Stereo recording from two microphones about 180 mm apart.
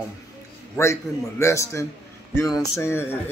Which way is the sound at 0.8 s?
15° left (ahead or behind).